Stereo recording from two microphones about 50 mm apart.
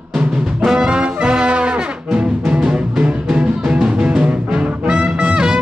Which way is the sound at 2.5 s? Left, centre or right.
Centre.